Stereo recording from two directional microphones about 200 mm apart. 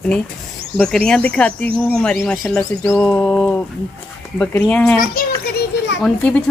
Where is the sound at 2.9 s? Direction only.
10° left (ahead or behind).